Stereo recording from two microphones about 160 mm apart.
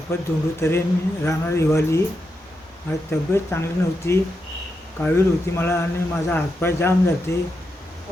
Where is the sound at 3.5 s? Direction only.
15° left (ahead or behind).